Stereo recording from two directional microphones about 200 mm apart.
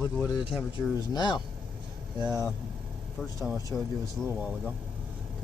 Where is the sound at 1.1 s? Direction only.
20° left (ahead or behind).